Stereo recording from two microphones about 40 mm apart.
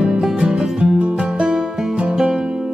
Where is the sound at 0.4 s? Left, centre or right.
Centre.